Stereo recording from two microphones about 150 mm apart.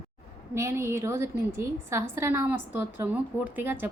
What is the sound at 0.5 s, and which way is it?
A woman's voice, 20° right (ahead or behind).